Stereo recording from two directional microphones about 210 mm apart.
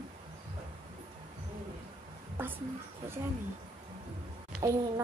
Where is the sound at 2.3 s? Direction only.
10° right (ahead or behind).